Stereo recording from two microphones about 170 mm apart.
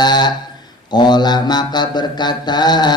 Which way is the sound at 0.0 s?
25° left (ahead or behind).